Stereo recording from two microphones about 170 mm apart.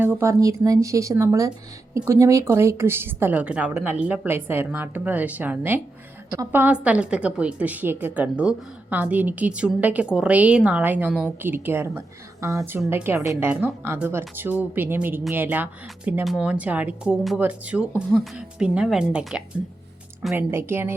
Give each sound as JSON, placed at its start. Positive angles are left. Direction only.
{"t": 0.0, "sound": "a woman's voice", "side_deg": -15}
{"t": 20.3, "sound": "a woman's voice", "side_deg": -15}